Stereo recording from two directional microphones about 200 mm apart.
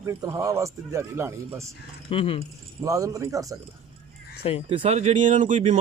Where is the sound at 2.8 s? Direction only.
15° right (ahead or behind).